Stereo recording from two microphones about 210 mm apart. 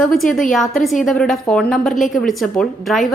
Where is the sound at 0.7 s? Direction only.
Centre (ahead or behind).